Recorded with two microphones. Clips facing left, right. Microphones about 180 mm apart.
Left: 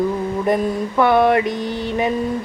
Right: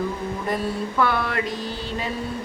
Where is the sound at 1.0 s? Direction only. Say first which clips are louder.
Left 10 dB; 20° left (ahead or behind).